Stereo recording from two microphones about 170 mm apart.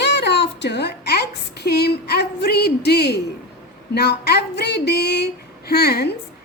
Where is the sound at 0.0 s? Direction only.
90° left; by 6.1 s 70° left (ahead or behind).